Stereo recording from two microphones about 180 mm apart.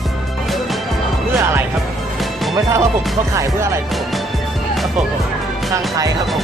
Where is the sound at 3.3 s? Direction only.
15° right (ahead or behind).